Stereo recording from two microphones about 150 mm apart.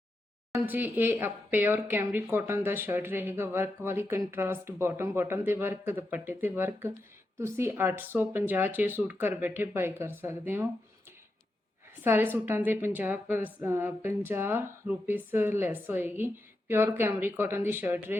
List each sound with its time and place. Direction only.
0.5 s a woman's voice: 10° right (ahead or behind)
12.0 s a woman's voice: 15° right (ahead or behind)